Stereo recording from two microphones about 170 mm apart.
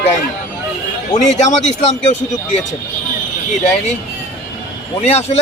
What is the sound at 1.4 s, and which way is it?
Speech, 40° left (ahead or behind).